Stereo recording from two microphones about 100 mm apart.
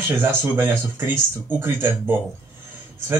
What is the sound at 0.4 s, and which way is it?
A man's voice, 25° right (ahead or behind).